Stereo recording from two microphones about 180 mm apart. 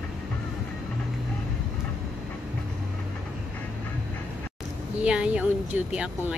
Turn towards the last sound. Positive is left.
turn(degrees=-5)  # may be behind; listen again after turning